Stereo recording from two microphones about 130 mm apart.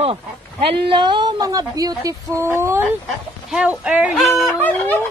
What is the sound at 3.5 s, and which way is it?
Speech, 10° right (ahead or behind).